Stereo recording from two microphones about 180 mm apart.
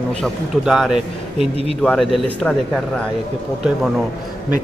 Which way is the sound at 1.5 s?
35° right (ahead or behind).